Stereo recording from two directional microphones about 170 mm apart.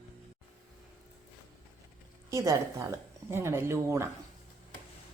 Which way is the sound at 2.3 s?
15° right (ahead or behind).